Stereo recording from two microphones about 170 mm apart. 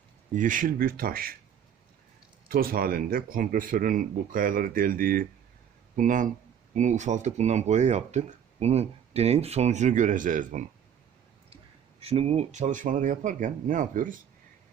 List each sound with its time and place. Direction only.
0.3 s speech: 50° right (ahead or behind)
2.5 s speech: 60° right (ahead or behind)
11.9 s speech: 35° right (ahead or behind); by 14.2 s 50° right (ahead or behind)